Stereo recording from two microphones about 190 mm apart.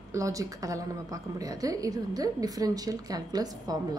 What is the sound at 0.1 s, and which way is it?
A woman's voice, 15° right (ahead or behind).